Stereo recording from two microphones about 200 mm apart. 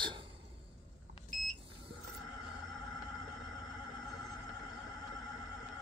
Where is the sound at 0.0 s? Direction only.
25° right (ahead or behind).